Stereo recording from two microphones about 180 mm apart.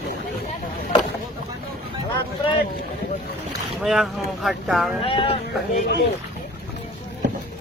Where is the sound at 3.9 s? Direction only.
Centre (ahead or behind).